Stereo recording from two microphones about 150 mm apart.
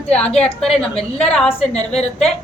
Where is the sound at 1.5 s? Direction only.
45° left (ahead or behind).